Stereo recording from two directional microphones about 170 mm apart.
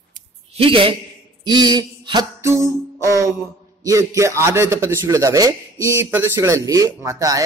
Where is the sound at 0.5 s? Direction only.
30° right (ahead or behind).